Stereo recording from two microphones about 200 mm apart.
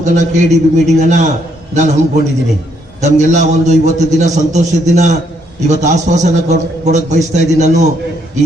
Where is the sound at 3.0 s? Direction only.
35° right (ahead or behind).